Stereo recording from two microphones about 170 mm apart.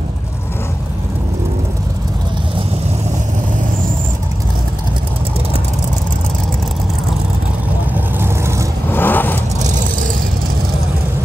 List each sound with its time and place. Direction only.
8.2 s vehicle: 15° right (ahead or behind)
8.9 s vehicle: 10° left (ahead or behind)
9.6 s vehicle: 45° right (ahead or behind)